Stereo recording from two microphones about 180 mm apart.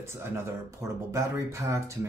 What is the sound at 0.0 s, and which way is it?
Speech, 15° right (ahead or behind).